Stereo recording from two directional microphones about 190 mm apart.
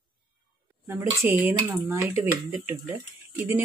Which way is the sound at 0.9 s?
15° right (ahead or behind).